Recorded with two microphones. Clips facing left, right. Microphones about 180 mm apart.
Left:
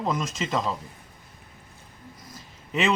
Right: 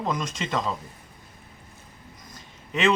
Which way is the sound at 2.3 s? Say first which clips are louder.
Left 2 dB; 5° left (ahead or behind).